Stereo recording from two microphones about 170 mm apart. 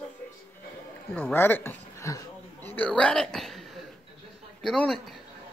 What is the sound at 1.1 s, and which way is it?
Speech, 10° left (ahead or behind).